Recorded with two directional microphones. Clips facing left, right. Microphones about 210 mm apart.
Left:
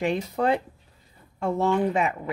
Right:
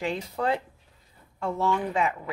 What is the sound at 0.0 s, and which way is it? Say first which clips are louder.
Speech: left 4 dB; 20° left (ahead or behind).